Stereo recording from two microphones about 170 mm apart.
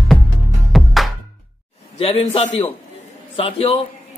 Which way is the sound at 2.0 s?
35° left (ahead or behind).